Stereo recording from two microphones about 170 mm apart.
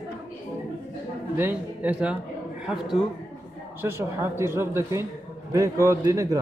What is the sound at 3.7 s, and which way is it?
A man's voice, 15° right (ahead or behind).